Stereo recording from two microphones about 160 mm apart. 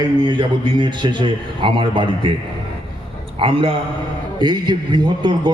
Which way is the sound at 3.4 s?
35° right (ahead or behind).